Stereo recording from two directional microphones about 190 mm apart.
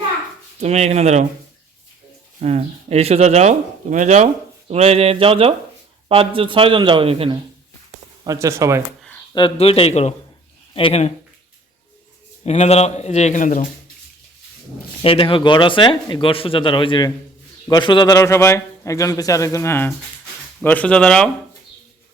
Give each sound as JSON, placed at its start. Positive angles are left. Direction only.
{"t": 0.6, "sound": "speech", "side_deg": -35}
{"t": 2.4, "sound": "a man's voice", "side_deg": -35}
{"t": 8.2, "sound": "speech", "side_deg": -15}
{"t": 9.3, "sound": "speech", "side_deg": 30}
{"t": 12.5, "sound": "speech", "side_deg": 35}
{"t": 15.0, "sound": "a man's voice", "side_deg": 30}